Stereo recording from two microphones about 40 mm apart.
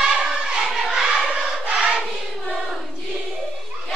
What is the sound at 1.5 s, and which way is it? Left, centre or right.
Choir, right.